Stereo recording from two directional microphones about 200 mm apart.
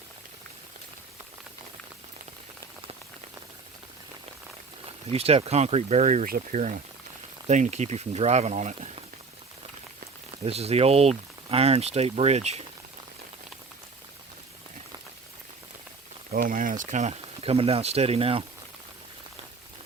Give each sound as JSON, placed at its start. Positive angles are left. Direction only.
{"t": 5.1, "sound": "speech", "side_deg": -30}
{"t": 10.3, "sound": "speech", "side_deg": -30}
{"t": 16.3, "sound": "speech", "side_deg": -45}